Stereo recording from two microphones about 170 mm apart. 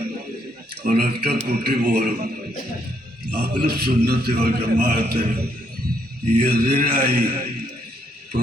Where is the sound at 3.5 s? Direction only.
60° right (ahead or behind).